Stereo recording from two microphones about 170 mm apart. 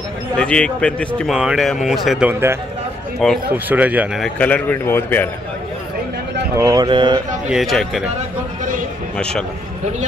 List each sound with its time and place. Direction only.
0.4 s speech: 5° left (ahead or behind); by 2.6 s 10° right (ahead or behind)
3.2 s speech: centre (ahead or behind)
3.5 s speech: 10° right (ahead or behind)
4.2 s a man's voice: 10° left (ahead or behind)
6.5 s speech: 20° right (ahead or behind)
7.4 s speech: centre (ahead or behind)